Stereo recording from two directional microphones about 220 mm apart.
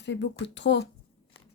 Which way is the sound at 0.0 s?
55° left (ahead or behind).